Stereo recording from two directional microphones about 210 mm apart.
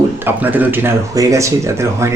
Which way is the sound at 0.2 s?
10° right (ahead or behind).